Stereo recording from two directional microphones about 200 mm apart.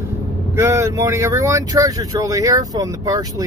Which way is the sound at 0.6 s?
15° right (ahead or behind).